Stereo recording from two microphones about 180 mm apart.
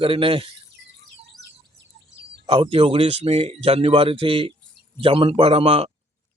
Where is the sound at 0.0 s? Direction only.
30° right (ahead or behind).